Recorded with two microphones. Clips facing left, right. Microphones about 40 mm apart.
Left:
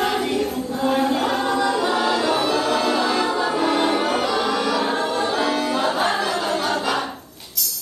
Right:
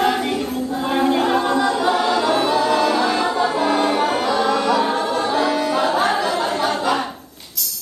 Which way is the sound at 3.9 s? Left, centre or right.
Centre.